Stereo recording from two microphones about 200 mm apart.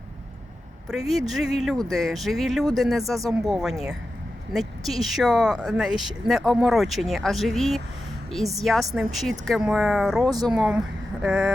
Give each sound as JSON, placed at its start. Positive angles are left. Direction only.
{"t": 0.9, "sound": "speech", "side_deg": 0}
{"t": 10.2, "sound": "speech", "side_deg": -20}
{"t": 10.5, "sound": "speech", "side_deg": 0}